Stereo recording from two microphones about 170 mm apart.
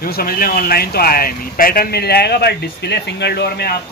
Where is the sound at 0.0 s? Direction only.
60° left (ahead or behind); by 3.7 s 75° left (ahead or behind).